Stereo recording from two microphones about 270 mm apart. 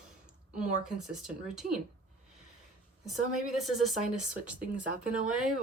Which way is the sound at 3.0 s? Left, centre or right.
Centre.